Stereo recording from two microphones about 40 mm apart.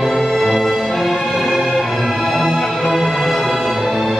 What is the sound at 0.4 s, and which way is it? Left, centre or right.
Music, centre.